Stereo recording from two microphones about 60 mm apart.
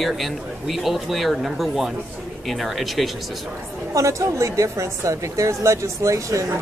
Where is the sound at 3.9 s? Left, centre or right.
Right.